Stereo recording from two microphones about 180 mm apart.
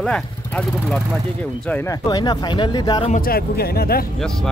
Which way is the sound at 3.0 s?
50° left (ahead or behind).